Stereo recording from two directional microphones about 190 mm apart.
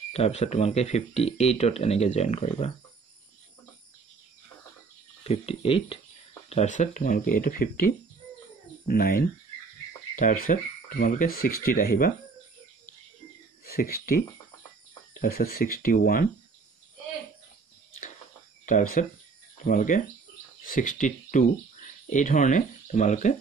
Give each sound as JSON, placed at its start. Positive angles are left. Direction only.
{"t": 0.1, "sound": "speech", "side_deg": 35}
{"t": 5.2, "sound": "speech", "side_deg": 35}
{"t": 13.7, "sound": "speech", "side_deg": 50}
{"t": 15.1, "sound": "speech", "side_deg": 50}
{"t": 18.7, "sound": "speech", "side_deg": 45}